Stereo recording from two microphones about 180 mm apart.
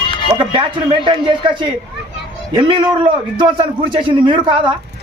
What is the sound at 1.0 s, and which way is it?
Speech, 25° right (ahead or behind).